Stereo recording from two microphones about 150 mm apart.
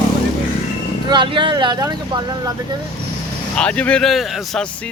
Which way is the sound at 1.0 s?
30° right (ahead or behind).